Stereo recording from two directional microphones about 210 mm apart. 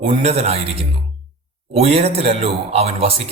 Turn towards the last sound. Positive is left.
turn(degrees=-30)  # may be behind; listen again after turning